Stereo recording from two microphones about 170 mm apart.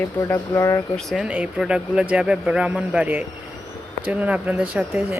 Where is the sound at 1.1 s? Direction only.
5° right (ahead or behind).